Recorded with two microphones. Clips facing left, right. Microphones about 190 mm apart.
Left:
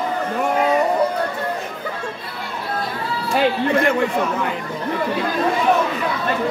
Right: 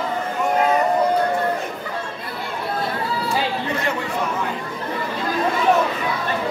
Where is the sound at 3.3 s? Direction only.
55° left (ahead or behind).